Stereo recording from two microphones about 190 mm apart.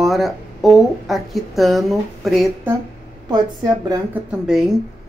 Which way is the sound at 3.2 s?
20° right (ahead or behind).